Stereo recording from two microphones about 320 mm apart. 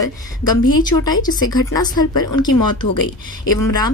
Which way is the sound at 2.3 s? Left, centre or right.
Left.